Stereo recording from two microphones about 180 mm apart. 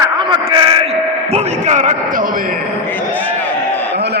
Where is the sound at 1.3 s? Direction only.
40° right (ahead or behind).